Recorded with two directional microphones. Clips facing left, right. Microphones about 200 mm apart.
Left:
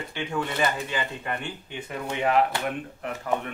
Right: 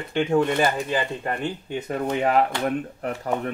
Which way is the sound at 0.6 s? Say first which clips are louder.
Right 4 dB; 35° right (ahead or behind).